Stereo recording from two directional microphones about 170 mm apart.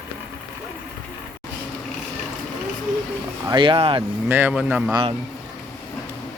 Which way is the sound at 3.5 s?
30° right (ahead or behind).